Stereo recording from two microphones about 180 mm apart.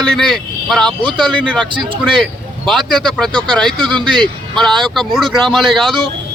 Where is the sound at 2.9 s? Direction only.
5° left (ahead or behind).